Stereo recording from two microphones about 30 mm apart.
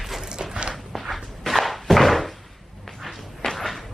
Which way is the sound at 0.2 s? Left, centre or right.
Right.